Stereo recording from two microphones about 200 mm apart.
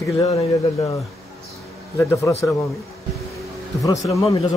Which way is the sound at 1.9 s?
15° left (ahead or behind).